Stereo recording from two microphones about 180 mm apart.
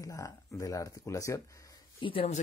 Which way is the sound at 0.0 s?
15° left (ahead or behind).